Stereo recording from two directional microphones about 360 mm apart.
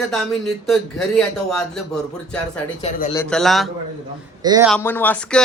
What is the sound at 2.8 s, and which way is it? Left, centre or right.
Speech, centre.